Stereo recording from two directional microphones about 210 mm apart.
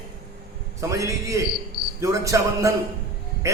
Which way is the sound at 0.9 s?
15° right (ahead or behind).